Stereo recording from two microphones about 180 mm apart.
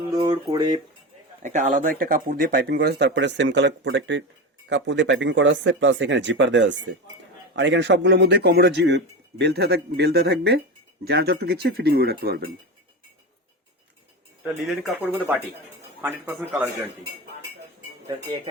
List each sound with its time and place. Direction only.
0.1 s speech: 20° right (ahead or behind)
1.4 s speech: 45° right (ahead or behind); by 12.4 s 60° right (ahead or behind)
14.4 s speech: 5° right (ahead or behind)